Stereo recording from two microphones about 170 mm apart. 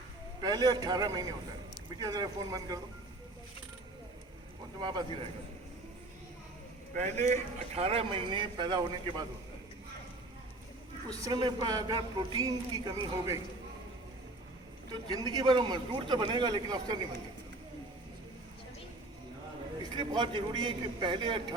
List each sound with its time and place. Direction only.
0.4 s a man's voice: 25° right (ahead or behind)
4.8 s a man's voice: 25° right (ahead or behind)
6.9 s a man's voice: 40° right (ahead or behind); by 9.2 s 25° right (ahead or behind)
11.1 s a man's voice: 20° right (ahead or behind)
15.1 s a man's voice: 25° right (ahead or behind)
19.8 s a man's voice: 25° right (ahead or behind)